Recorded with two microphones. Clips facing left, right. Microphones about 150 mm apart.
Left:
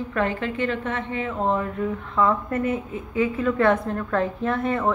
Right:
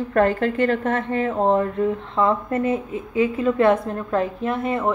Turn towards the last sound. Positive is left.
turn(degrees=-10)  # may be behind; listen again after turning